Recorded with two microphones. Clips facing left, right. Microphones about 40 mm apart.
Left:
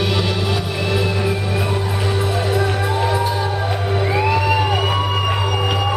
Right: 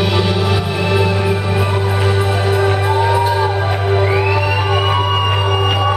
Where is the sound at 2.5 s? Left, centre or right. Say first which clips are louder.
Right 4 dB; right.